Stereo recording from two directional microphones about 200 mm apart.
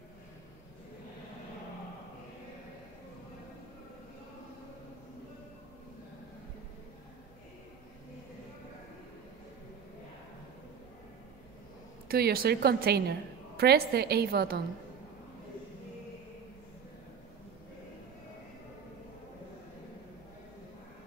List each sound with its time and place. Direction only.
12.1 s a woman's voice: 50° right (ahead or behind)